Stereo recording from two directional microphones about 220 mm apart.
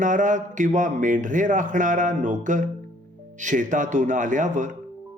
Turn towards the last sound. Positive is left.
turn(degrees=-35)  # may be behind; listen again after turning